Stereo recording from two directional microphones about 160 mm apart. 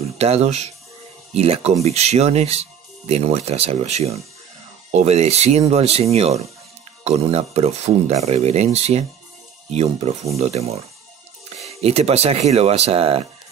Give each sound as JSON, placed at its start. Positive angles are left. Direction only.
{"t": 0.2, "sound": "speech", "side_deg": -40}